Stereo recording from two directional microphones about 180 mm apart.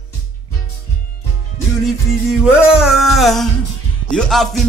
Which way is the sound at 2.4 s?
5° right (ahead or behind).